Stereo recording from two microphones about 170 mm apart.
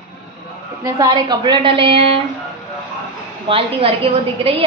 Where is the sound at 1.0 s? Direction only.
25° right (ahead or behind).